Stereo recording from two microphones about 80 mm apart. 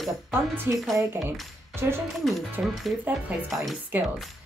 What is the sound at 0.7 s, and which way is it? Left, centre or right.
Speech, right.